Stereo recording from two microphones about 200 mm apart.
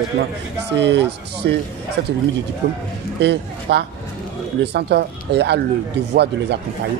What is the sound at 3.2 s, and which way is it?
Speech, 55° right (ahead or behind).